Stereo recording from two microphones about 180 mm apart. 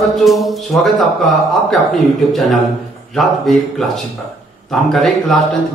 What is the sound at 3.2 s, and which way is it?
Speech, centre (ahead or behind).